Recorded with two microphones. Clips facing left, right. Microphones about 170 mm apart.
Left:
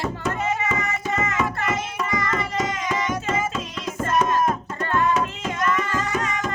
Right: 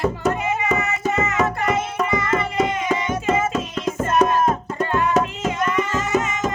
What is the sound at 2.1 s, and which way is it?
Music, 25° right (ahead or behind).